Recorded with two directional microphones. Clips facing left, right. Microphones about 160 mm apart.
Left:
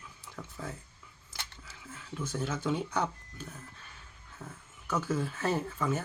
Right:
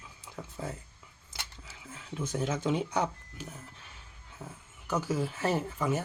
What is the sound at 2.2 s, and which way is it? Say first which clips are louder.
Speech: right 3 dB; 15° right (ahead or behind).